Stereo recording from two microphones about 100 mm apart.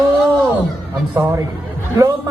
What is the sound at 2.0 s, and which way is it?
Speech, 35° right (ahead or behind).